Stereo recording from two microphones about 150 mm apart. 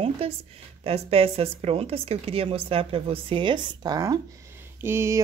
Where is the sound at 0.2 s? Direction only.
40° right (ahead or behind).